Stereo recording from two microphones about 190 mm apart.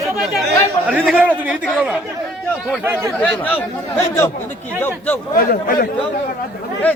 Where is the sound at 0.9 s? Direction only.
5° right (ahead or behind).